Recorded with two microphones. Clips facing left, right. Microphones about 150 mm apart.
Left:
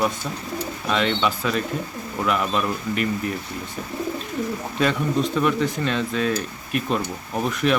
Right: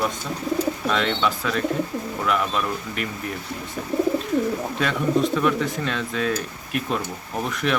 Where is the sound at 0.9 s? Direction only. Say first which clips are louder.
Left 5 dB; centre (ahead or behind).